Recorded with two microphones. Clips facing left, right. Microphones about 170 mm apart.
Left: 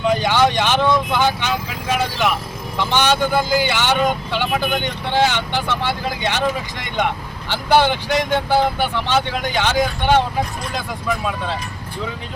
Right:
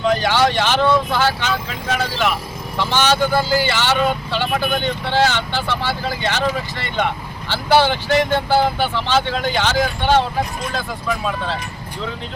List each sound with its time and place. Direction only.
0.0 s vehicle: 15° left (ahead or behind)
0.4 s speech: 15° left (ahead or behind)